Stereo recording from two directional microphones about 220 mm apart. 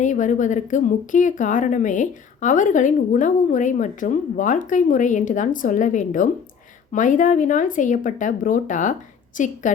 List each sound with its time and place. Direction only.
0.0 s a woman's voice: 35° left (ahead or behind)